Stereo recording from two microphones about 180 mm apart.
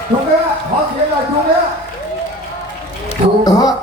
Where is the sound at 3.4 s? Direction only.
20° left (ahead or behind).